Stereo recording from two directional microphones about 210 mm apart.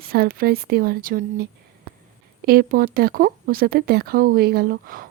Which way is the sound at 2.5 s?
45° right (ahead or behind).